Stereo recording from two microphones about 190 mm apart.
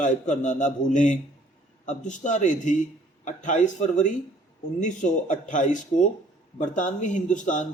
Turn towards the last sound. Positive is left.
turn(degrees=40)  # may be behind; listen again after turning